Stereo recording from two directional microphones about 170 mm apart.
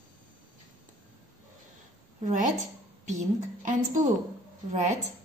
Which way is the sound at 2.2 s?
50° right (ahead or behind).